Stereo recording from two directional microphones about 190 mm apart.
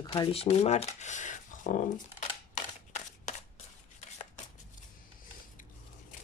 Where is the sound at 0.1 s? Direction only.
30° left (ahead or behind).